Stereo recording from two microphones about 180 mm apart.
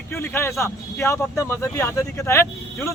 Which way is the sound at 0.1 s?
10° left (ahead or behind).